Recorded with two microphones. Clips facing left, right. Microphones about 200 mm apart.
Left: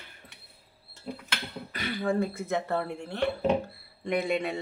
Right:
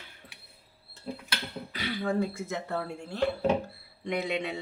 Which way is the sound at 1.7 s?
50° left (ahead or behind).